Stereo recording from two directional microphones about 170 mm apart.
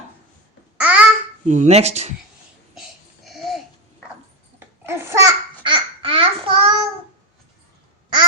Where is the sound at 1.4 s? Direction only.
45° right (ahead or behind).